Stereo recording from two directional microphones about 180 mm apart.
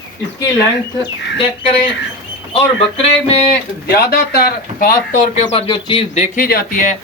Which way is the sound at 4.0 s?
60° left (ahead or behind).